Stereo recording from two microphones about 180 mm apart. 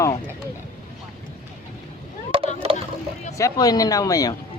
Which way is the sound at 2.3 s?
30° right (ahead or behind).